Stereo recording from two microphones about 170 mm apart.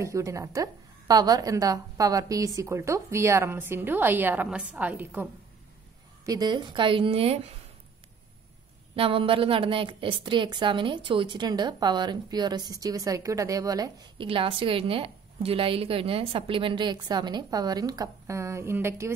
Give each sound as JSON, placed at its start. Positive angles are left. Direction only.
{"t": 0.0, "sound": "a woman's voice", "side_deg": -20}
{"t": 6.2, "sound": "a woman's voice", "side_deg": -25}
{"t": 8.9, "sound": "a woman's voice", "side_deg": -30}